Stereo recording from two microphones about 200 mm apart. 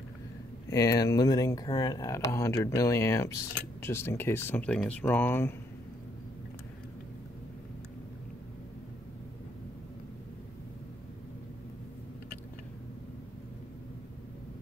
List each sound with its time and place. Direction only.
0.7 s speech: 15° left (ahead or behind)